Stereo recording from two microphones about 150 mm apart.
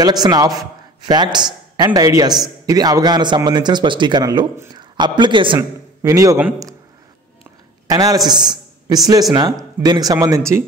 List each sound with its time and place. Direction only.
0.0 s a man's voice: 25° right (ahead or behind)
5.6 s a man's voice: 20° right (ahead or behind)
7.9 s a man's voice: 25° right (ahead or behind)